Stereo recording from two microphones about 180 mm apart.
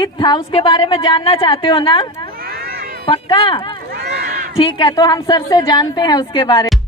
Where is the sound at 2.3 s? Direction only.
60° right (ahead or behind).